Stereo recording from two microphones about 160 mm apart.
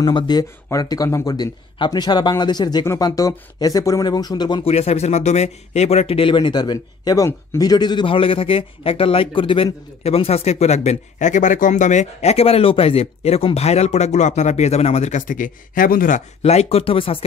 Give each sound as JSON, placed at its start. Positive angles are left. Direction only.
{"t": 0.0, "sound": "speech", "side_deg": 25}
{"t": 4.6, "sound": "speech", "side_deg": 40}
{"t": 16.4, "sound": "speech", "side_deg": 40}